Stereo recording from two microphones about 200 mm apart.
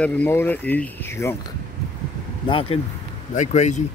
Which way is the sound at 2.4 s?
25° left (ahead or behind).